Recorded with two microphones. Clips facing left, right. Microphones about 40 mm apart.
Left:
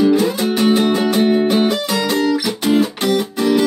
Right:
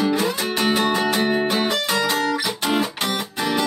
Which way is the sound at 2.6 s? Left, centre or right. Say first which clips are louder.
Left 6 dB; centre.